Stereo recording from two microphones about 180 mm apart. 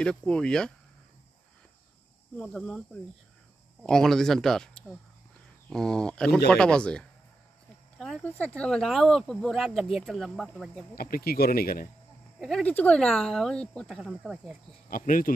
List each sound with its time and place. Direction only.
0.0 s speech: 5° left (ahead or behind)
2.3 s speech: centre (ahead or behind)
11.0 s speech: 55° left (ahead or behind)
12.4 s speech: centre (ahead or behind)
14.9 s speech: 50° left (ahead or behind)